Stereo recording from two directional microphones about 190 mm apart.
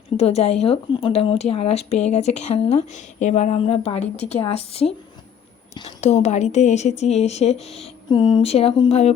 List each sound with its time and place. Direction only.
0.2 s speech: 35° left (ahead or behind)